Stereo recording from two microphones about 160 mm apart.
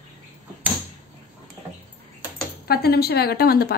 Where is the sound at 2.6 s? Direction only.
80° left.